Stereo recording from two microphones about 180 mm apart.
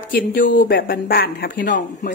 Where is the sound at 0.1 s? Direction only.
50° left (ahead or behind).